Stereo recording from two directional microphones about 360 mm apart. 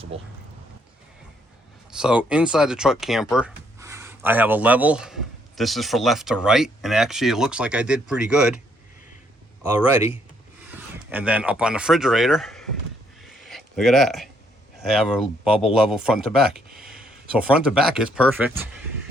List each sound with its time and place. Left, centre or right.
0.1 s speech: centre
1.9 s speech: centre
9.9 s speech: centre
13.2 s a sound: centre
14.8 s speech: centre